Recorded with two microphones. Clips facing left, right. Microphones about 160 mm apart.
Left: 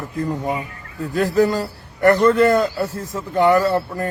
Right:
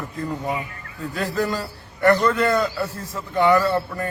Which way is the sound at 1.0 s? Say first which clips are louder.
Left 7 dB; 45° left (ahead or behind).